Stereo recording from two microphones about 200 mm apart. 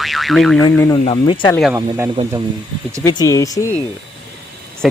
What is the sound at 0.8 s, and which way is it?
Speech, 15° left (ahead or behind).